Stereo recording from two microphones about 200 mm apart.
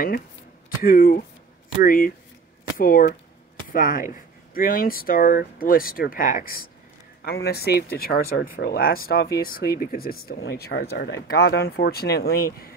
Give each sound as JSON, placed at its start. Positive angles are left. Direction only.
{"t": 0.8, "sound": "speech", "side_deg": 45}